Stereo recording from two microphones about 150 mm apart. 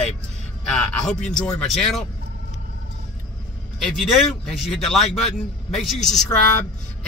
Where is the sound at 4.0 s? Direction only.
Centre (ahead or behind).